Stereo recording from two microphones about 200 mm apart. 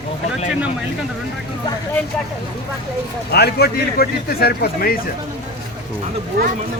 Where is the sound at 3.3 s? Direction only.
55° left (ahead or behind).